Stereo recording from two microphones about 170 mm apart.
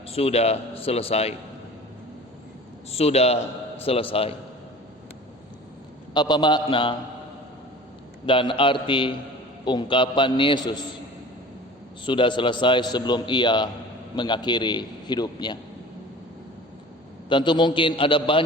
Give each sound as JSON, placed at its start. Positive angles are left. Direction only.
{"t": 0.1, "sound": "a man's voice", "side_deg": 35}
{"t": 2.9, "sound": "a man's voice", "side_deg": 35}
{"t": 6.1, "sound": "a man's voice", "side_deg": 25}
{"t": 8.3, "sound": "a man's voice", "side_deg": 30}
{"t": 12.0, "sound": "a man's voice", "side_deg": 30}
{"t": 17.2, "sound": "a man's voice", "side_deg": 30}